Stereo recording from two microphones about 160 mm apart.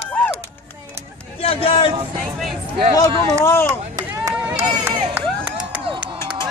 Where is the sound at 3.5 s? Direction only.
15° left (ahead or behind).